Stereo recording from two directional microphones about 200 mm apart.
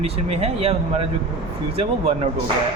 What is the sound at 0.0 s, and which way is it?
A man's voice, 30° right (ahead or behind).